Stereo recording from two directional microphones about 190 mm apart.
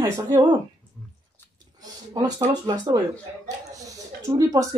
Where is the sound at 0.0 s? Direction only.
20° right (ahead or behind).